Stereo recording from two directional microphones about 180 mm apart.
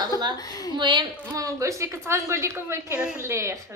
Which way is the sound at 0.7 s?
25° right (ahead or behind).